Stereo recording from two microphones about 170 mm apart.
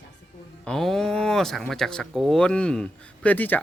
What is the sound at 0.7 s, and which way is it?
Speech, 5° left (ahead or behind).